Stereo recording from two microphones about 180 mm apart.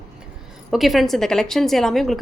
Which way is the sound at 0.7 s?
Centre (ahead or behind).